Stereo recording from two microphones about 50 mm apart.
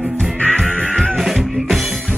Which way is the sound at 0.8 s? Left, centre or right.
Centre.